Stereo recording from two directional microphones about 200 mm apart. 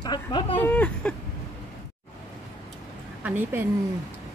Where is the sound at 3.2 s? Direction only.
10° right (ahead or behind).